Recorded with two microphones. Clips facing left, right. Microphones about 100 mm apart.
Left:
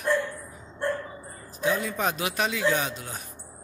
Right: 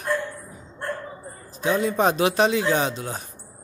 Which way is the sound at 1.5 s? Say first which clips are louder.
Right 5 dB; 25° right (ahead or behind).